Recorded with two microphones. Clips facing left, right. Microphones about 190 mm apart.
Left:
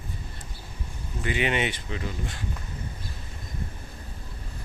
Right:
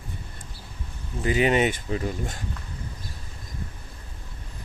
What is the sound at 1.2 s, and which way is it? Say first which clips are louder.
Speech: right 5 dB; 40° right (ahead or behind).